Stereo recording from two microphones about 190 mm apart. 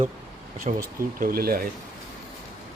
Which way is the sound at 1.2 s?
50° right (ahead or behind).